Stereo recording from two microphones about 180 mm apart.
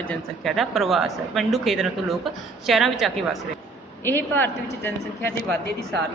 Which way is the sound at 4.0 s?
10° left (ahead or behind).